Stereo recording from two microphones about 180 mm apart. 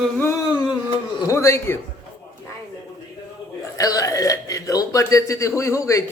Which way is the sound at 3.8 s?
20° left (ahead or behind).